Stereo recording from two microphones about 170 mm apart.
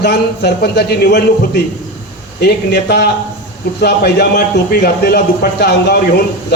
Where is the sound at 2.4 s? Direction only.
70° left (ahead or behind).